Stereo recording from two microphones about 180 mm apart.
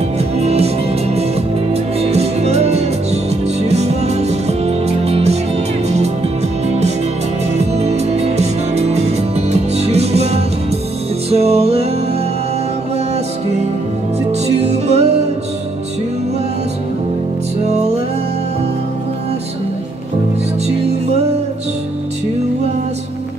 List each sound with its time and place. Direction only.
0.4 s music: 35° right (ahead or behind)
1.7 s music: 35° right (ahead or behind)
7.5 s music: 35° right (ahead or behind)
14.5 s music: 35° right (ahead or behind)
17.6 s music: 35° right (ahead or behind)